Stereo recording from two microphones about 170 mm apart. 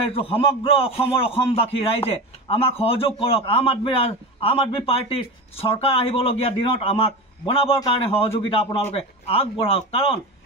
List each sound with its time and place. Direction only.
0.0 s a man's voice: 35° left (ahead or behind)